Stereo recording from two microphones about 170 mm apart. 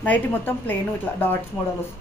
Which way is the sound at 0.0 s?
10° left (ahead or behind).